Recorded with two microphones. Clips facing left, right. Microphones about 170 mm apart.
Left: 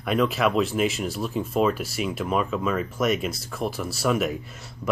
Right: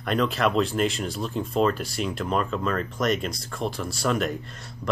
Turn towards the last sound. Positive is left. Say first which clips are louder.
# left 1 dB
turn(degrees=5)  # may be behind; listen again after turning